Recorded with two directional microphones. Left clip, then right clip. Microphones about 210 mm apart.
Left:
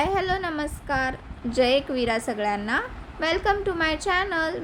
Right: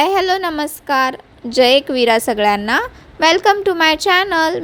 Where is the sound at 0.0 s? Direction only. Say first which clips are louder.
Right 10 dB; 35° right (ahead or behind).